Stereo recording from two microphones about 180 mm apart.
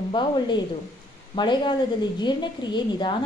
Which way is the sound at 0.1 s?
25° left (ahead or behind).